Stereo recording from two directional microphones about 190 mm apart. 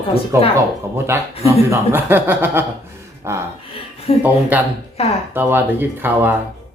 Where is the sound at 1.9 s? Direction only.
10° right (ahead or behind).